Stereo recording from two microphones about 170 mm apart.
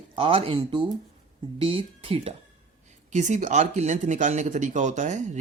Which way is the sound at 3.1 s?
45° right (ahead or behind).